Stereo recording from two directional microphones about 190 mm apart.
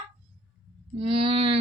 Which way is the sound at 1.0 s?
30° right (ahead or behind).